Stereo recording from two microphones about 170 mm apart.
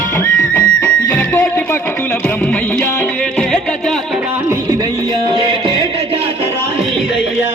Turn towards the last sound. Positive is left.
turn(degrees=-30)  # may be behind; listen again after turning